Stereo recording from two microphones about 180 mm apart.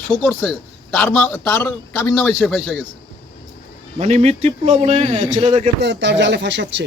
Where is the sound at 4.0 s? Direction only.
35° right (ahead or behind).